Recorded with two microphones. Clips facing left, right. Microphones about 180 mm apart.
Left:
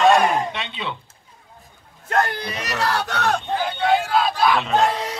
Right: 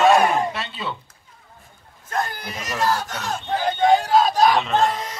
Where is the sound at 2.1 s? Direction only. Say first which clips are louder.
Left 5 dB; 70° left (ahead or behind).